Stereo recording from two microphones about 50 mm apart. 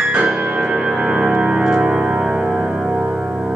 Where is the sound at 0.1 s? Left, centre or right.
Centre.